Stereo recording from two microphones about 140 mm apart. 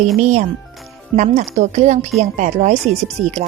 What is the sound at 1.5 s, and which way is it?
A woman's voice, 55° right (ahead or behind).